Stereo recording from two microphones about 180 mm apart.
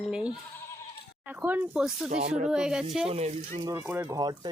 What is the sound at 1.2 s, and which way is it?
Speech, 10° right (ahead or behind).